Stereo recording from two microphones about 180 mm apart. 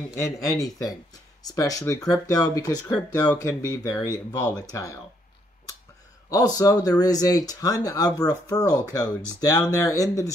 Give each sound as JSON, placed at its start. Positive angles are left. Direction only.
{"t": 0.1, "sound": "speech", "side_deg": 15}
{"t": 6.3, "sound": "speech", "side_deg": 20}